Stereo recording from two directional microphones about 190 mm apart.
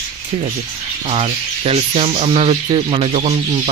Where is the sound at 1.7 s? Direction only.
30° right (ahead or behind).